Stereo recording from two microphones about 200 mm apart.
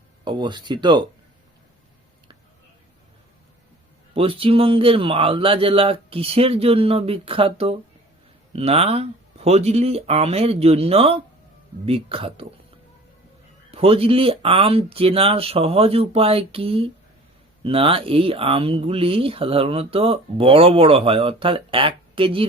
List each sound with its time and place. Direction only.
0.3 s speech: 20° right (ahead or behind)
4.1 s speech: 30° right (ahead or behind)
13.7 s speech: 30° right (ahead or behind)